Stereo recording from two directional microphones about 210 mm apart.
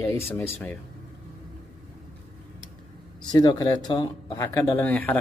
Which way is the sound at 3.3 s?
20° left (ahead or behind).